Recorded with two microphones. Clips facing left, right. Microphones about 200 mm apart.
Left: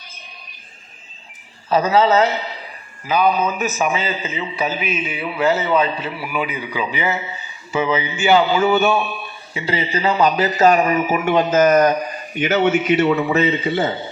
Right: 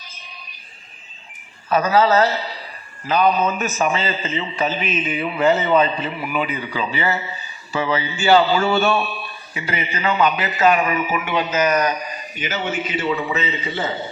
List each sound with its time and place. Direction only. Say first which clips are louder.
1.7 s a man's voice: left 1 dB; 25° left (ahead or behind)
9.6 s a man's voice: left 4 dB; 30° left (ahead or behind); by 13.6 s 60° left (ahead or behind)